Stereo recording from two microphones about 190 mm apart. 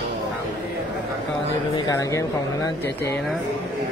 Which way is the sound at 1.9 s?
15° left (ahead or behind).